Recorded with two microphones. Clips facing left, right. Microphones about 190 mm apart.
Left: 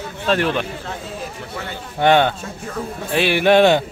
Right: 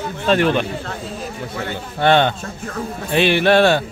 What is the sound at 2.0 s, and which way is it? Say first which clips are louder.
A man's voice: even; 10° left (ahead or behind).